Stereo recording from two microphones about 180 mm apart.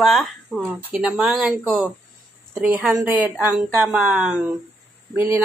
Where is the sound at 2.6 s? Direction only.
5° right (ahead or behind).